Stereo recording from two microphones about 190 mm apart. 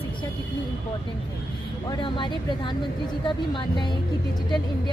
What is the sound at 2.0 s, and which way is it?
Speech, 25° left (ahead or behind).